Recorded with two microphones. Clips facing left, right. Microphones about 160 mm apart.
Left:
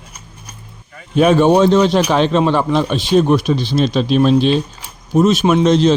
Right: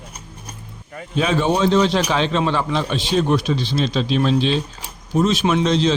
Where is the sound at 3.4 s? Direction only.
15° left (ahead or behind).